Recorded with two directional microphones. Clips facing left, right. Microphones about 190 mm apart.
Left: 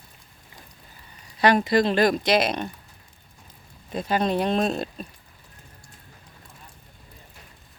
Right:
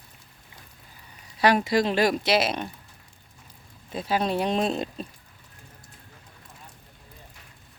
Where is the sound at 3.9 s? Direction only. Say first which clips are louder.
Left 2 dB; 5° right (ahead or behind).